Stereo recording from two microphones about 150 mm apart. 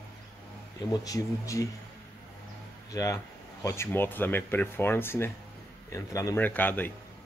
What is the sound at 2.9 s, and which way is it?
Speech, 25° left (ahead or behind).